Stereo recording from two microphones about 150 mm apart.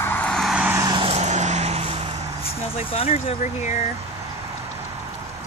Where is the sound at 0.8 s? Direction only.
30° right (ahead or behind).